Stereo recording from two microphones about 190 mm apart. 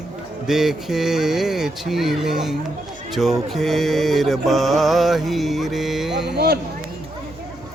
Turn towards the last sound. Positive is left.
turn(degrees=-55)  # may be behind; listen again after turning